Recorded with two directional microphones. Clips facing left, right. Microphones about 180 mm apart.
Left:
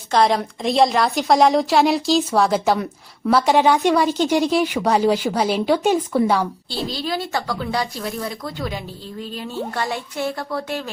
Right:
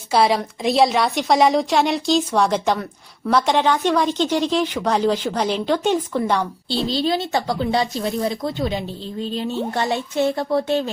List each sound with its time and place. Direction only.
0.1 s a woman's voice: 5° right (ahead or behind)
6.9 s speech: 25° right (ahead or behind)